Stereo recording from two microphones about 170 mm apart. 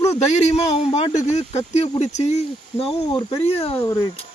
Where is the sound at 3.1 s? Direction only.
30° left (ahead or behind).